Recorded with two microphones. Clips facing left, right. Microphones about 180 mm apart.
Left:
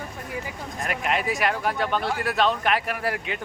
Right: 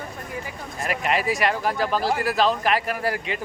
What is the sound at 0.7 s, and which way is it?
Speech, centre (ahead or behind).